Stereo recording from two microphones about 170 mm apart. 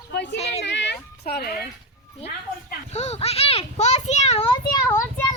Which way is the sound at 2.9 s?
40° left (ahead or behind).